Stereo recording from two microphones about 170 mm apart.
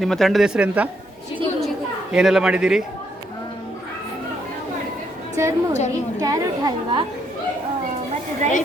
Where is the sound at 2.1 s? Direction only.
5° right (ahead or behind).